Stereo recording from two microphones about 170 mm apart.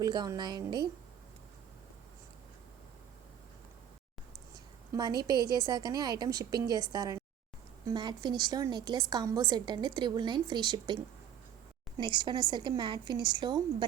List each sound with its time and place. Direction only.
0.0 s a woman's voice: 25° right (ahead or behind)
4.9 s a woman's voice: 25° right (ahead or behind)